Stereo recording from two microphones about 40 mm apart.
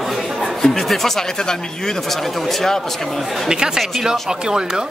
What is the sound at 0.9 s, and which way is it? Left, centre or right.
Speech, centre.